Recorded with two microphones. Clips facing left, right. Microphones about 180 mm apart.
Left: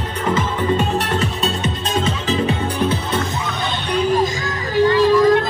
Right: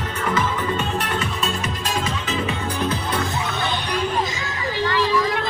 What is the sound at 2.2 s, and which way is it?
Music, 35° left (ahead or behind).